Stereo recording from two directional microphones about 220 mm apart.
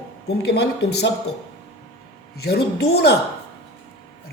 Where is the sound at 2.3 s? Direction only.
45° left (ahead or behind).